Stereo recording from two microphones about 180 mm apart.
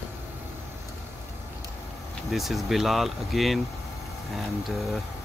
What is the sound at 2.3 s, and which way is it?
Speech, centre (ahead or behind).